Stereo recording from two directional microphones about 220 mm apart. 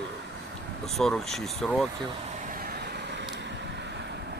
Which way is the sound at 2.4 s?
40° right (ahead or behind).